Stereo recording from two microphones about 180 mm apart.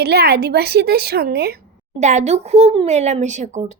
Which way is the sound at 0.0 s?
65° right (ahead or behind).